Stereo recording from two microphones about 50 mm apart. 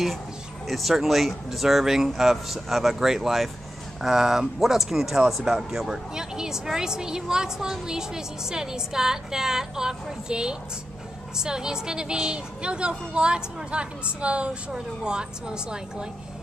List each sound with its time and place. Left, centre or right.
0.7 s a woman's voice: centre